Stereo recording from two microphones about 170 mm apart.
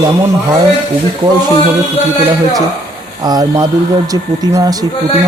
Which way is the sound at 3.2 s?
25° right (ahead or behind).